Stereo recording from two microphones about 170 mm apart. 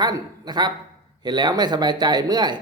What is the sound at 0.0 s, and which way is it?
A man's voice, 25° right (ahead or behind).